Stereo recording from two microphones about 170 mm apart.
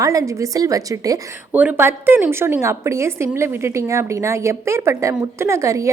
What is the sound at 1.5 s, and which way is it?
A woman's voice, 10° right (ahead or behind).